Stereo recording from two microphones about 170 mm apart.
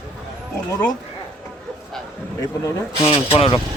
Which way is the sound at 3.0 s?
30° left (ahead or behind).